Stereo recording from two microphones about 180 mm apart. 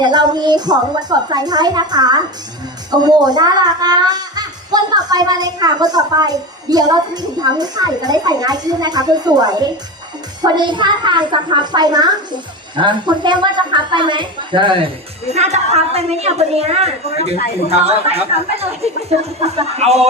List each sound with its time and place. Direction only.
0.0 s a child's voice: 25° right (ahead or behind)
15.3 s speech: 40° right (ahead or behind)